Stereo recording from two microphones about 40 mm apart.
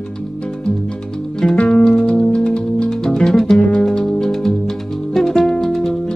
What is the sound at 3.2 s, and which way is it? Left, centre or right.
Music, centre.